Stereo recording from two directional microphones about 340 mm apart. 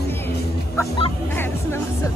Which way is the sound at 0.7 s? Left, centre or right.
Centre.